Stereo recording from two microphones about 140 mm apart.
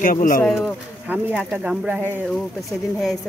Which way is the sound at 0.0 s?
75° left (ahead or behind).